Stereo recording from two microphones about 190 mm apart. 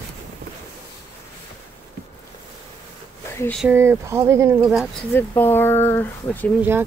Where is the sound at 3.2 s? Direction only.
15° left (ahead or behind).